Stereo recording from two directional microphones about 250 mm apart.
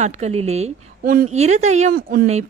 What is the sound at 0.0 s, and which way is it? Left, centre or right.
A woman's voice, right.